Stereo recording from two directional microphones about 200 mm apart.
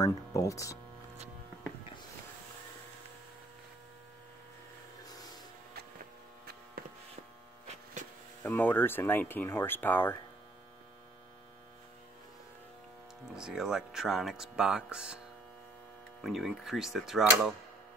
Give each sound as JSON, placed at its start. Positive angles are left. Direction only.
{"t": 0.0, "sound": "speech", "side_deg": 15}
{"t": 8.5, "sound": "speech", "side_deg": 10}
{"t": 13.2, "sound": "speech", "side_deg": 0}
{"t": 16.2, "sound": "speech", "side_deg": 0}